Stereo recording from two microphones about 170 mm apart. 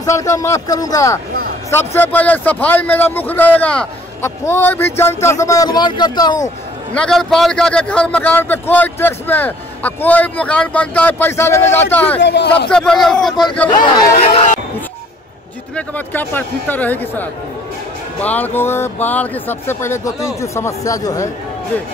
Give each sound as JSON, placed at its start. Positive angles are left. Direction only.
{"t": 0.0, "sound": "a man's voice", "side_deg": 20}
{"t": 6.9, "sound": "a man's voice", "side_deg": 5}
{"t": 12.2, "sound": "speech", "side_deg": 90}
{"t": 12.6, "sound": "a man's voice", "side_deg": 5}
{"t": 14.2, "sound": "speech", "side_deg": 40}
{"t": 15.7, "sound": "a man's voice", "side_deg": 10}